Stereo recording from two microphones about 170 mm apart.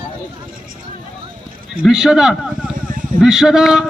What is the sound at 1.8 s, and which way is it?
Speech, 5° right (ahead or behind).